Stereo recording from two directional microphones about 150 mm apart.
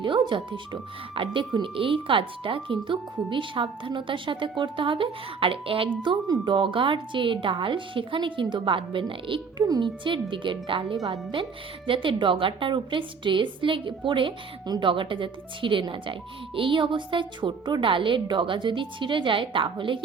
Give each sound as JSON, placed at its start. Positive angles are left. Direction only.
{"t": 0.0, "sound": "speech", "side_deg": -35}